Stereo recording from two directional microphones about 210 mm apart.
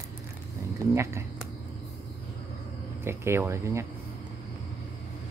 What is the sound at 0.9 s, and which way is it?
Speech, 15° right (ahead or behind).